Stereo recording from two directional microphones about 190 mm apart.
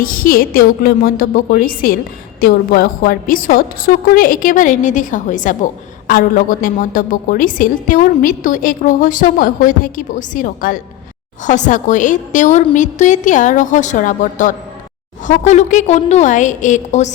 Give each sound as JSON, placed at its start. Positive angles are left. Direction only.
{"t": 0.0, "sound": "a woman's voice", "side_deg": 50}